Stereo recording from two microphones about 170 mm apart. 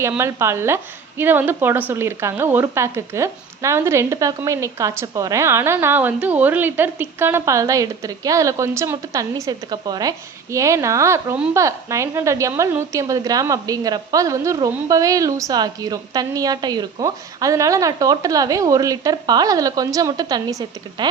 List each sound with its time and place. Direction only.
0.2 s a woman's voice: 15° right (ahead or behind)